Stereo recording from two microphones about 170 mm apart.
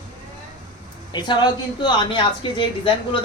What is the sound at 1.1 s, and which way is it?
Speech, 25° left (ahead or behind).